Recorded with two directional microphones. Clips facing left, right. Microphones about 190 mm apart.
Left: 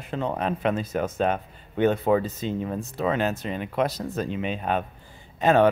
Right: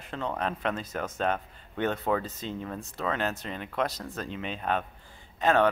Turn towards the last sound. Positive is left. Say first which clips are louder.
# left 5 dB
turn(degrees=15)  # may be behind; listen again after turning